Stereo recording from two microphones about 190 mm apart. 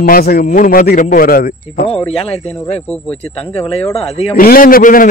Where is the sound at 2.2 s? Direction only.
30° left (ahead or behind).